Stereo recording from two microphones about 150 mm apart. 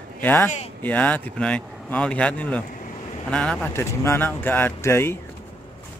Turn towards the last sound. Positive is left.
turn(degrees=15)  # may be behind; listen again after turning